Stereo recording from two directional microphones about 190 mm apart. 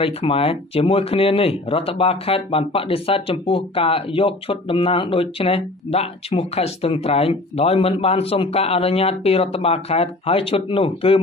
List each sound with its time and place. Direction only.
0.0 s speech: 30° left (ahead or behind)